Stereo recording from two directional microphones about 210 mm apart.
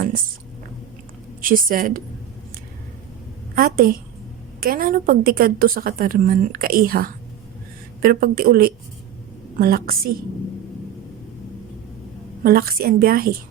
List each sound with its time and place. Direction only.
1.4 s a woman's voice: 40° right (ahead or behind)
3.5 s a woman's voice: 45° right (ahead or behind)
12.4 s a woman's voice: 45° right (ahead or behind)